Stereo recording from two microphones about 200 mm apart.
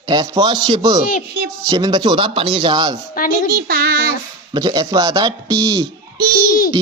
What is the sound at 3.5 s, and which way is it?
Child singing, 50° right (ahead or behind).